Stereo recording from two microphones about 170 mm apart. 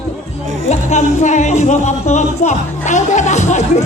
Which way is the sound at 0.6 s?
45° left (ahead or behind).